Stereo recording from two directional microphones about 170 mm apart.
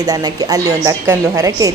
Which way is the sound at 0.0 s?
20° right (ahead or behind).